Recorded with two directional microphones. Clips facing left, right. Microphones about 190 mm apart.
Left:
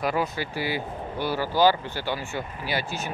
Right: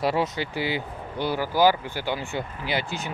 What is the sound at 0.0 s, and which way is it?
Speech, 25° right (ahead or behind).